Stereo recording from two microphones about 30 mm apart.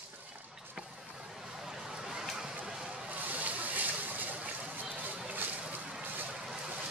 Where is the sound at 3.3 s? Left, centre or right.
Right.